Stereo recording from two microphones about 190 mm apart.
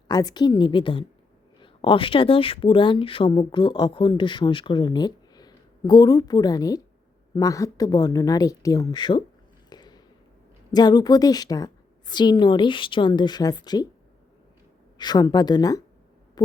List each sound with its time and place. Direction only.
0.1 s speech: 20° left (ahead or behind)
9.6 s a sound: 20° left (ahead or behind)
10.7 s speech: 20° left (ahead or behind)
14.9 s speech: 20° left (ahead or behind)